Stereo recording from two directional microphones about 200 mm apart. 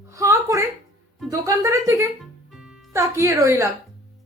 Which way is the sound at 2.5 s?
5° right (ahead or behind).